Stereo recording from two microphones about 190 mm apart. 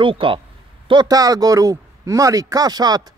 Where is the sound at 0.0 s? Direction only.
25° right (ahead or behind).